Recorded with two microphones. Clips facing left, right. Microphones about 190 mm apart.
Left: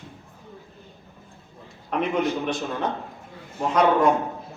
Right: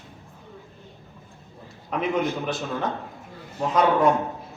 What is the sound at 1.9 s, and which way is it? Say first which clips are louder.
Speech: left 2 dB; centre (ahead or behind).